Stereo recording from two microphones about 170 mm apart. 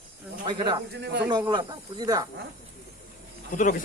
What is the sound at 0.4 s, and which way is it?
Speech, 25° right (ahead or behind).